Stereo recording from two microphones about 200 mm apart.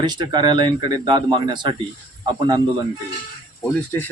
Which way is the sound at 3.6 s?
10° left (ahead or behind).